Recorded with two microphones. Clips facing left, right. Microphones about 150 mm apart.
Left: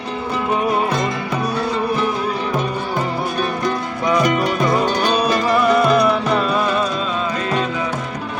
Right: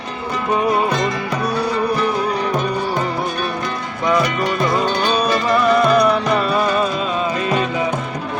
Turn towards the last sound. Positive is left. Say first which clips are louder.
# right 1 dB
turn(degrees=-5)  # may be behind; listen again after turning